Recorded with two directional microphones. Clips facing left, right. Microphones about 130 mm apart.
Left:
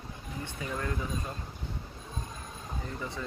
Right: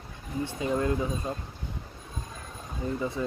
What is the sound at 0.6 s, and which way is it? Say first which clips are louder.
Speech: right 8 dB; 25° right (ahead or behind).